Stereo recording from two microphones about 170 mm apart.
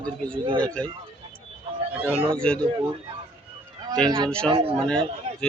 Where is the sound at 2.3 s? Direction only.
5° left (ahead or behind).